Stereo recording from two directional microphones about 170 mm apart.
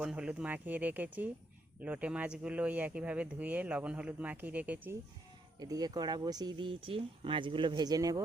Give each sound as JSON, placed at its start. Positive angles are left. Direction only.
{"t": 0.0, "sound": "speech", "side_deg": -5}
{"t": 5.5, "sound": "speech", "side_deg": -25}